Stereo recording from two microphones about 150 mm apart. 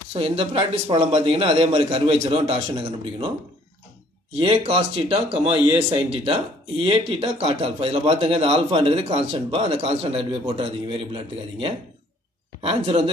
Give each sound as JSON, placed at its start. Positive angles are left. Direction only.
{"t": 0.1, "sound": "a man's voice", "side_deg": -40}
{"t": 4.4, "sound": "a man's voice", "side_deg": -40}
{"t": 12.6, "sound": "a man's voice", "side_deg": -40}